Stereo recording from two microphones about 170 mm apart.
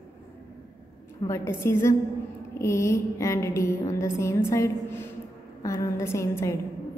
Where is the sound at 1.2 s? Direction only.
15° left (ahead or behind).